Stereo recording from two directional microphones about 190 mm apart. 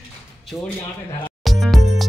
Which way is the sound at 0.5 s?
10° left (ahead or behind).